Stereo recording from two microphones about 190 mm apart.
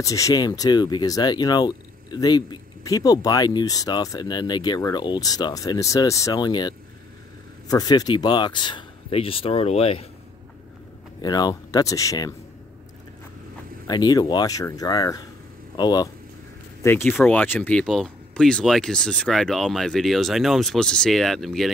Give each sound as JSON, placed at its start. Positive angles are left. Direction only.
{"t": 0.0, "sound": "speech", "side_deg": 15}
{"t": 11.1, "sound": "speech", "side_deg": 20}
{"t": 13.8, "sound": "speech", "side_deg": 20}
{"t": 16.8, "sound": "speech", "side_deg": 10}